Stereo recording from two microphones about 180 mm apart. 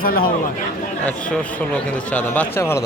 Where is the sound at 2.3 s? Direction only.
15° left (ahead or behind).